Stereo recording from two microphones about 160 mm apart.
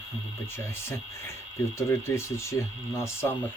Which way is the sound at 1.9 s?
15° left (ahead or behind).